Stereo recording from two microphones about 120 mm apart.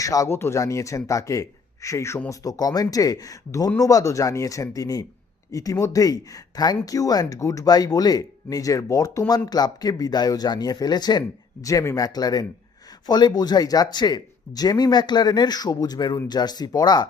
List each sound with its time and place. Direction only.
0.0 s speech: 30° left (ahead or behind)
2.4 s speech: 30° left (ahead or behind)